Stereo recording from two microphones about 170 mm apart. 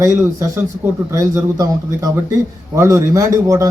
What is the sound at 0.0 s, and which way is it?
A man's voice, 15° right (ahead or behind).